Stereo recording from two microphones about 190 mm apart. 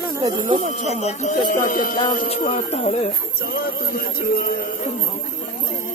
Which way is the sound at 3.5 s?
55° left (ahead or behind).